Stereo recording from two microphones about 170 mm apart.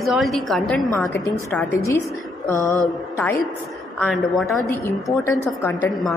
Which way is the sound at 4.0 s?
Centre (ahead or behind).